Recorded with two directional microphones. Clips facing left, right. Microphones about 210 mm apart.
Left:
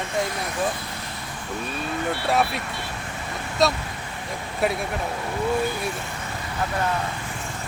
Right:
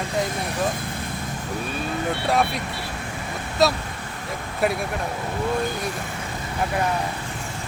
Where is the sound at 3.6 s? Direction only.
Centre (ahead or behind).